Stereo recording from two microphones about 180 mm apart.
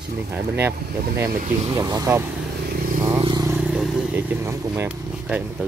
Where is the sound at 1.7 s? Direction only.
20° right (ahead or behind).